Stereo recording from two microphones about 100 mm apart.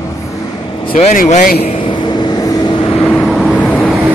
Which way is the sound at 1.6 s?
60° left (ahead or behind).